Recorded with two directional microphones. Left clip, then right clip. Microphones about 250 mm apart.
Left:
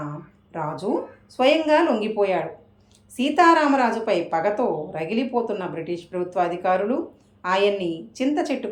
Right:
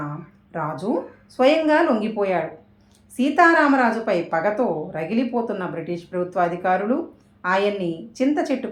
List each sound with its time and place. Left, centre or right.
0.5 s a woman's voice: centre